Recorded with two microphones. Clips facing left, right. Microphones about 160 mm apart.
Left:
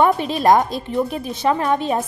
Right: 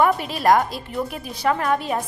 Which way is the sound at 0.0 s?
20° left (ahead or behind).